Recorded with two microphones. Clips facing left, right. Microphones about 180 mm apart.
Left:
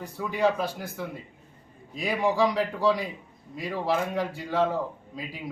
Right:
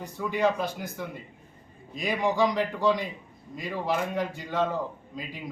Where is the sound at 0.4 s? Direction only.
30° left (ahead or behind).